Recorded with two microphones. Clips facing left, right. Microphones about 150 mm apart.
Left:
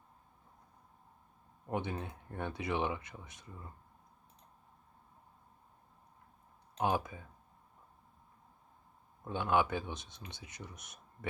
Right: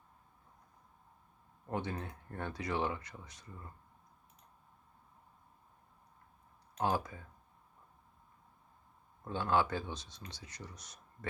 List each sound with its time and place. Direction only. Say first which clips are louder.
1.6 s speech: left 1 dB; 15° left (ahead or behind)
3.4 s speech: left 1 dB; 10° left (ahead or behind)
6.7 s speech: left 1 dB; 15° left (ahead or behind)
9.3 s speech: left 1 dB; 15° left (ahead or behind)